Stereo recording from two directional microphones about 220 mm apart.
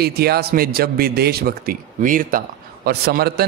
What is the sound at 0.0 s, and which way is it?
Speech, 45° right (ahead or behind).